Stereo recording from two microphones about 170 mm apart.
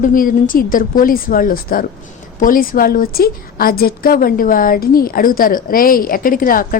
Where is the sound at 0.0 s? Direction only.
55° left (ahead or behind).